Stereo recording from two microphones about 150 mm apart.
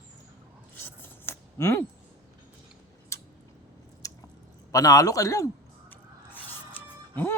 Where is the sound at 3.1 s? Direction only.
20° left (ahead or behind).